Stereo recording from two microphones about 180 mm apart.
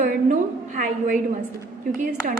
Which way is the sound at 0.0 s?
50° right (ahead or behind).